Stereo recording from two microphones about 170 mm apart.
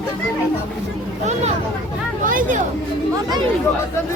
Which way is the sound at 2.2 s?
50° right (ahead or behind).